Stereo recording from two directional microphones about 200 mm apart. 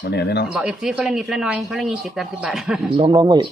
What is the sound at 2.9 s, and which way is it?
Speech, 25° right (ahead or behind).